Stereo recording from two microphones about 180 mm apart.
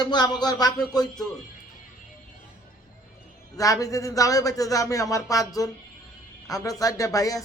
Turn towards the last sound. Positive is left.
turn(degrees=20)  # may be behind; listen again after turning